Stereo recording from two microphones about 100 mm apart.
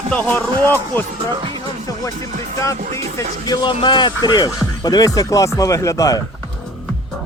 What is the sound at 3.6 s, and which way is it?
Speech, 50° left (ahead or behind).